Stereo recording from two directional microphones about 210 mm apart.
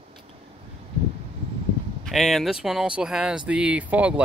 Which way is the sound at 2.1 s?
Centre (ahead or behind).